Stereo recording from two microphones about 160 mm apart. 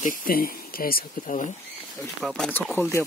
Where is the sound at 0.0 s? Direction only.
60° left (ahead or behind).